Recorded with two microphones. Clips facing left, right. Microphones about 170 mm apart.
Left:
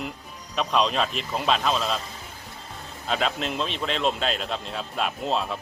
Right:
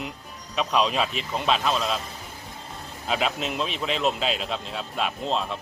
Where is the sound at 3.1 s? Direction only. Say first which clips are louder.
Even; 5° right (ahead or behind).